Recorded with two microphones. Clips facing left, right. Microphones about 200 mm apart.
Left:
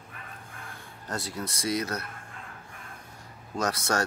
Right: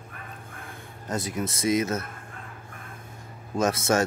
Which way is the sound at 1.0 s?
20° right (ahead or behind).